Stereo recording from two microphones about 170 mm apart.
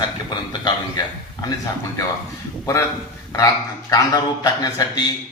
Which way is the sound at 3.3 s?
20° left (ahead or behind).